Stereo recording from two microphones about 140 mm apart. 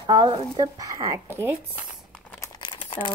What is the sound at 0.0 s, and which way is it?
Speech, 30° right (ahead or behind).